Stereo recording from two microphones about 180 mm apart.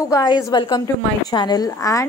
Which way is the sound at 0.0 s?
20° left (ahead or behind).